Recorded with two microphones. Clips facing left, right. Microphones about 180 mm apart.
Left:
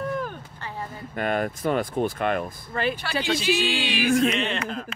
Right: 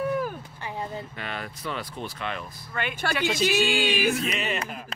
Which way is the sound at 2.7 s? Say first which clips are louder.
Left 5 dB; 35° left (ahead or behind).